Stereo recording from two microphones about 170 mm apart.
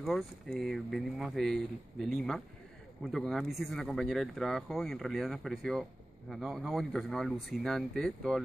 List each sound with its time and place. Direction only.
0.0 s speech: centre (ahead or behind)